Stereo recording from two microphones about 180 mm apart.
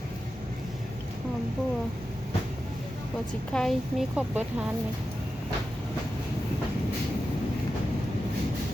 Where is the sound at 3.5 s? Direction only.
Centre (ahead or behind).